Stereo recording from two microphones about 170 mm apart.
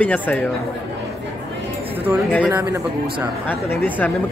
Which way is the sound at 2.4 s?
15° right (ahead or behind).